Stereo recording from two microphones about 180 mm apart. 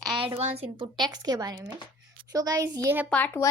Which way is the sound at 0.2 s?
30° right (ahead or behind).